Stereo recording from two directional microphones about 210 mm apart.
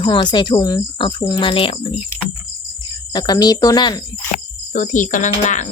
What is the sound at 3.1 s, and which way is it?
Speech, 20° left (ahead or behind).